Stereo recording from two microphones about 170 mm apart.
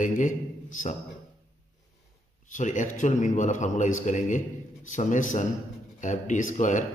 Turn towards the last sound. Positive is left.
turn(degrees=45)  # may be behind; listen again after turning